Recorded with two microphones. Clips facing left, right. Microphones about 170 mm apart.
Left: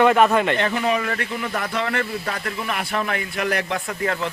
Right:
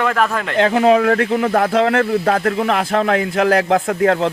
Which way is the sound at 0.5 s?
90° right.